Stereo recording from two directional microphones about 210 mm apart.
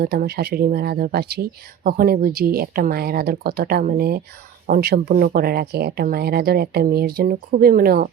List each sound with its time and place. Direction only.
0.0 s speech: 45° right (ahead or behind)